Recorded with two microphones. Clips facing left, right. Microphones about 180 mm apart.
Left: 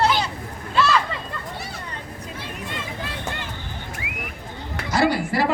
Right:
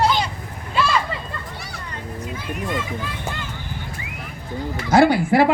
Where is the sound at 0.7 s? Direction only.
10° right (ahead or behind).